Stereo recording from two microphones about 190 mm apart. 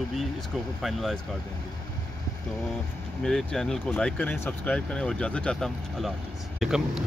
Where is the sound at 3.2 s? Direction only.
Centre (ahead or behind).